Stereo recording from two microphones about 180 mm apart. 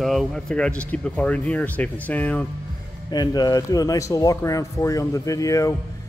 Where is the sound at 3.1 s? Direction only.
25° left (ahead or behind).